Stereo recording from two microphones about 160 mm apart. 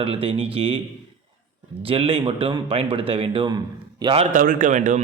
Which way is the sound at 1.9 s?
35° right (ahead or behind).